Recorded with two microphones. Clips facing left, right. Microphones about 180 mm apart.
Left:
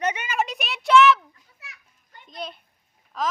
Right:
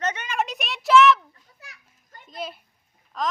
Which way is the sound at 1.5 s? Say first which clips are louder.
Right 2 dB; 40° right (ahead or behind).